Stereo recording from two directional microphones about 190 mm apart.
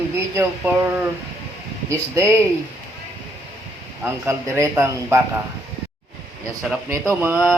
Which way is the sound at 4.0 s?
10° right (ahead or behind).